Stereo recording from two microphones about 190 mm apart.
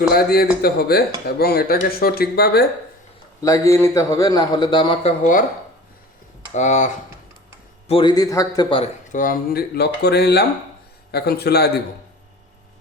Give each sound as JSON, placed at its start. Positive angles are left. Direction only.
{"t": 0.1, "sound": "a man's voice", "side_deg": 55}
{"t": 3.4, "sound": "a man's voice", "side_deg": 15}
{"t": 5.2, "sound": "a man's voice", "side_deg": 45}
{"t": 6.5, "sound": "speech", "side_deg": 35}
{"t": 7.9, "sound": "a man's voice", "side_deg": 25}
{"t": 8.7, "sound": "speech", "side_deg": 40}